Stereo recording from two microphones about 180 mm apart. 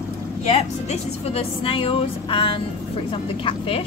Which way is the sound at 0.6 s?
35° left (ahead or behind).